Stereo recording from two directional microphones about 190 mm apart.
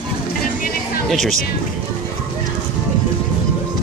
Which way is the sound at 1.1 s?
Centre (ahead or behind).